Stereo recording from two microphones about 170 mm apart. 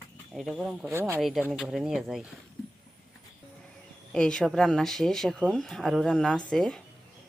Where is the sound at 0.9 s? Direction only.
15° right (ahead or behind).